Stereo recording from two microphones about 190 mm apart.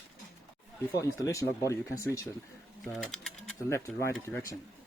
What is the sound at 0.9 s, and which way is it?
Speech, 15° left (ahead or behind).